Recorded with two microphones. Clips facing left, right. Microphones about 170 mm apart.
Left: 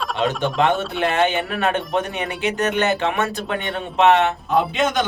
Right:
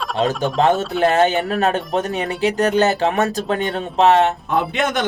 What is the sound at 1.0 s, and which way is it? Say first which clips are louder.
Speech: right 4 dB; 40° right (ahead or behind).